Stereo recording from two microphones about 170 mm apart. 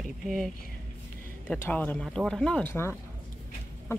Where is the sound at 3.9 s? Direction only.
15° left (ahead or behind).